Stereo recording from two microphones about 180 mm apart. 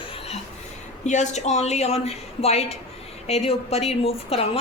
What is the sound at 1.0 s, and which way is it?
A woman's voice, 40° left (ahead or behind).